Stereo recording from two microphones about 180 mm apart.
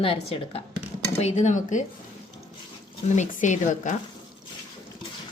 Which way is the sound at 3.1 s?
45° left (ahead or behind).